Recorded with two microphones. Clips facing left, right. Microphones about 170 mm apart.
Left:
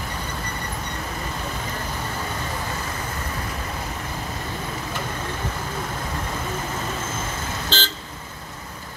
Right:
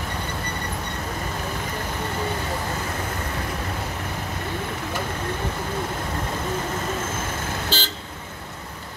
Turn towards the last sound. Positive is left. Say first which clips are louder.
# left 1 dB
turn(degrees=-10)  # may be behind; listen again after turning